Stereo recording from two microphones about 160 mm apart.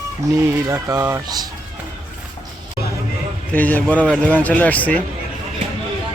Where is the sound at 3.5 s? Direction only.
10° left (ahead or behind).